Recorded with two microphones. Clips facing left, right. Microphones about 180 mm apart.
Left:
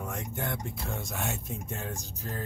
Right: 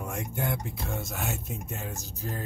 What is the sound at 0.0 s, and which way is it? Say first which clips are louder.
Speech: right 3 dB; 10° right (ahead or behind).